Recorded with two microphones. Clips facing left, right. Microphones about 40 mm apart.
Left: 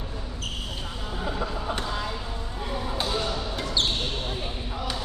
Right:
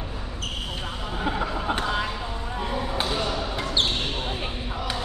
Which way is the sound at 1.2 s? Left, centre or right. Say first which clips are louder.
Right 4 dB; right.